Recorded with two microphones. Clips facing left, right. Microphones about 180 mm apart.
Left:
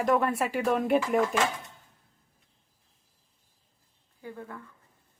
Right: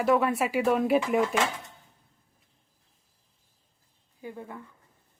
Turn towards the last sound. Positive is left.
turn(degrees=-20)  # may be behind; listen again after turning